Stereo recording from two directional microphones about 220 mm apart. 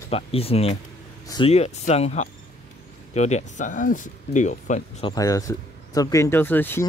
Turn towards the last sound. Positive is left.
turn(degrees=10)  # may be behind; listen again after turning